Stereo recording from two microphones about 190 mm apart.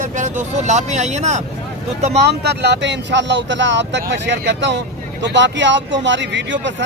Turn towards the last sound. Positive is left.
turn(degrees=-70)  # may be behind; listen again after turning